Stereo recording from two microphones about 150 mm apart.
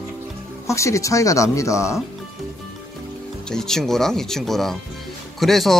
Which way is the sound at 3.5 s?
5° left (ahead or behind).